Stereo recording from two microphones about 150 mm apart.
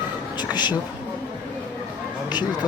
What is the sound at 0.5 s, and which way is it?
Speech, 30° left (ahead or behind).